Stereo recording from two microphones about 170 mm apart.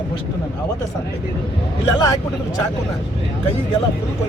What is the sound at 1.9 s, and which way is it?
Speech, 20° left (ahead or behind).